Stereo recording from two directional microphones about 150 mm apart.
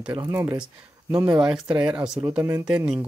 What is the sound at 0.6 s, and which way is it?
Speech, 10° right (ahead or behind).